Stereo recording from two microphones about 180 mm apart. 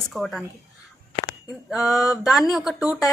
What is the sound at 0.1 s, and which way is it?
Speech, centre (ahead or behind).